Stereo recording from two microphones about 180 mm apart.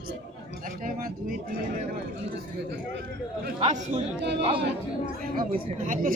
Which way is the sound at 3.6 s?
40° right (ahead or behind).